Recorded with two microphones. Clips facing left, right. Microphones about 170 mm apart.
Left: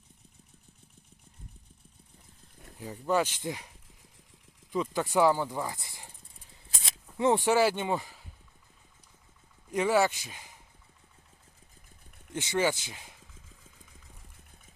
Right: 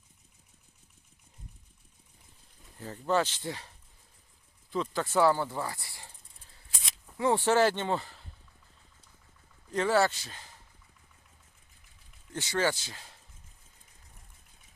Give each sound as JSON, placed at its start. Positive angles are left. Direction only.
{"t": 2.7, "sound": "speech", "side_deg": 10}
{"t": 4.7, "sound": "speech", "side_deg": 15}
{"t": 7.2, "sound": "speech", "side_deg": 20}
{"t": 9.7, "sound": "speech", "side_deg": 15}
{"t": 12.3, "sound": "speech", "side_deg": 20}